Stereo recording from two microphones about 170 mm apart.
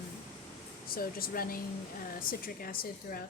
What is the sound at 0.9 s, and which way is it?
Speech, 60° left (ahead or behind).